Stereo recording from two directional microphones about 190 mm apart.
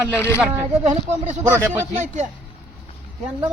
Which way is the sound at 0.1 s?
10° left (ahead or behind).